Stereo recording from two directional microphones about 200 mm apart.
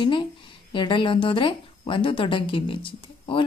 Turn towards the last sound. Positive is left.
turn(degrees=25)  # may be behind; listen again after turning